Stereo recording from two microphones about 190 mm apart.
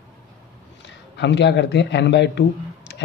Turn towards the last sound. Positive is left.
turn(degrees=65)  # may be behind; listen again after turning